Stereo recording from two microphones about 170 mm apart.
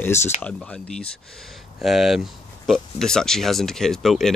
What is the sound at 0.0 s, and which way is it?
Speech, 15° left (ahead or behind).